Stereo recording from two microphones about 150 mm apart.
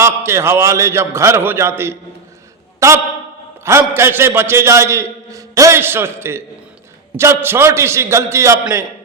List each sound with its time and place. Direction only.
0.0 s a man's voice: 20° right (ahead or behind)